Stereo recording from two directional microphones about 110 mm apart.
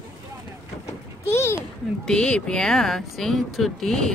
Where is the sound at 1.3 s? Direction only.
25° left (ahead or behind).